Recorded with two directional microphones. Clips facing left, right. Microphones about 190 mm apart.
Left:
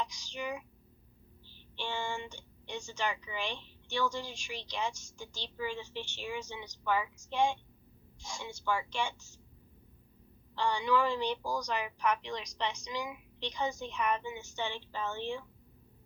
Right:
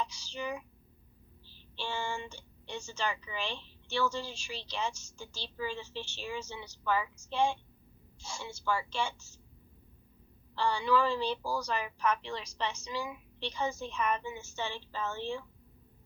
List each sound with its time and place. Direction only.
0.0 s a sound: 15° left (ahead or behind)
1.5 s a woman's voice: 15° left (ahead or behind)
10.5 s a woman's voice: 15° left (ahead or behind)